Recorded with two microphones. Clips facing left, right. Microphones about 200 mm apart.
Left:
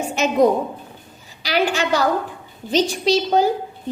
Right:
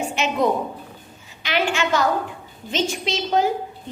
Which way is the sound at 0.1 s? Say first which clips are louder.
Left 5 dB; 40° left (ahead or behind).